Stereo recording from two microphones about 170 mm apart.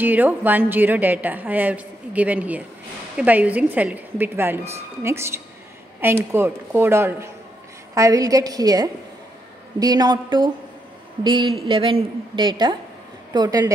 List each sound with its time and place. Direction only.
0.0 s a woman's voice: 10° right (ahead or behind)